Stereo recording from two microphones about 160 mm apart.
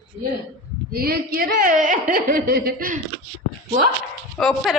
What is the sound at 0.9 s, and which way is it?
Speech, 70° right (ahead or behind).